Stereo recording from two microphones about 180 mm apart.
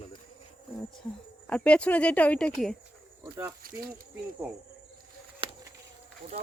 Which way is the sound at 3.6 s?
50° right (ahead or behind).